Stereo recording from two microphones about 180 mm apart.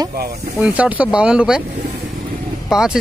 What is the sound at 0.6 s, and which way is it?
Speech, 10° right (ahead or behind).